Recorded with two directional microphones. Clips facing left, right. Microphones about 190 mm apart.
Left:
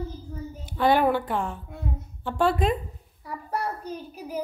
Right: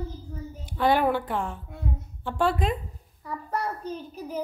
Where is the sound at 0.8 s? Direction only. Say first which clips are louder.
Left 1 dB; 30° left (ahead or behind).